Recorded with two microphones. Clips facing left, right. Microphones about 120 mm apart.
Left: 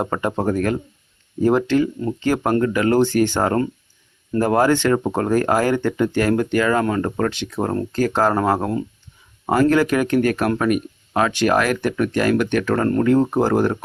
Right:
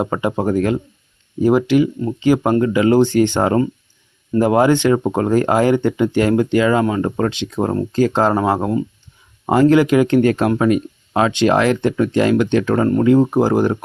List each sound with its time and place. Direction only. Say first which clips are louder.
0.0 s speech: right 2 dB; 15° right (ahead or behind)
9.5 s speech: right 4 dB; 20° right (ahead or behind)